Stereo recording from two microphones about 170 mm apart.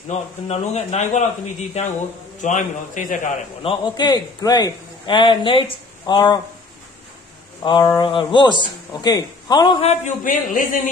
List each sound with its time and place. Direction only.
0.1 s a man's voice: 40° left (ahead or behind)
3.6 s a man's voice: 25° left (ahead or behind)
7.6 s a man's voice: 25° left (ahead or behind); by 10.9 s 50° left (ahead or behind)